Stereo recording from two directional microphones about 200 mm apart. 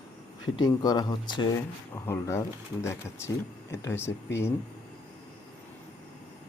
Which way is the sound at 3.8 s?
15° left (ahead or behind).